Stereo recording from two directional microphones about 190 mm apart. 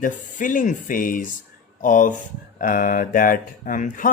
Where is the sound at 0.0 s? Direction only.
45° left (ahead or behind).